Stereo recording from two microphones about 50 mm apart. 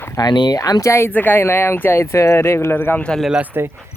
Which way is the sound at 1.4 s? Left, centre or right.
Left.